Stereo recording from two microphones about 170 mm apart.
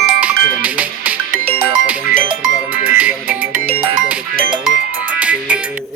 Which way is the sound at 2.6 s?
10° right (ahead or behind).